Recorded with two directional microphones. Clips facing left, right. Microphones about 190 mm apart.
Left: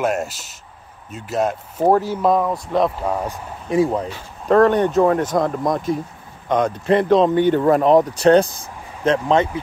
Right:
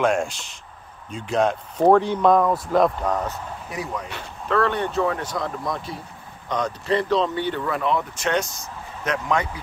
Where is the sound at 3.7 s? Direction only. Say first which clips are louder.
Left 13 dB; 30° left (ahead or behind).